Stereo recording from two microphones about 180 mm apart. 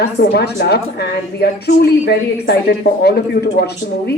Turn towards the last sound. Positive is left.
turn(degrees=65)  # may be behind; listen again after turning